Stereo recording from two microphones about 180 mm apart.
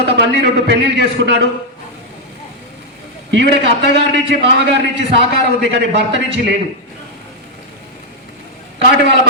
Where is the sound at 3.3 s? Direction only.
75° right (ahead or behind).